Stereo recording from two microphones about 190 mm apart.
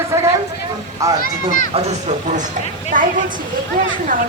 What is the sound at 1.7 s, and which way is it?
Speech, 35° right (ahead or behind).